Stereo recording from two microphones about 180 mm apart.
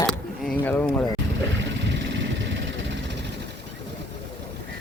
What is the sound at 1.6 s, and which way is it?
Vehicle, 80° right.